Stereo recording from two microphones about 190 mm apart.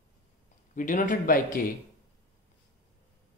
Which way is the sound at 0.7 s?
45° left (ahead or behind).